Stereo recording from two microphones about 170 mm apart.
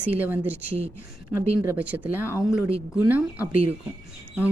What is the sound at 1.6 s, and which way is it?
Speech, 10° right (ahead or behind).